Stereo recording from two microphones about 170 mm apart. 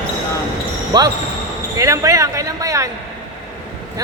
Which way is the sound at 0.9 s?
25° right (ahead or behind).